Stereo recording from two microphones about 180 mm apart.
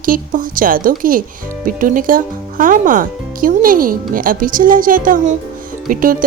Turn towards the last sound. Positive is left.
turn(degrees=-50)  # may be behind; listen again after turning